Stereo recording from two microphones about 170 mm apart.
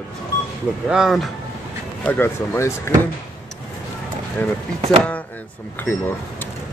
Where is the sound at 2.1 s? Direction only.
15° left (ahead or behind).